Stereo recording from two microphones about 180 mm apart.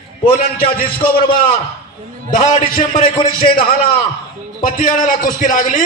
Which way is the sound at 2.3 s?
45° left (ahead or behind).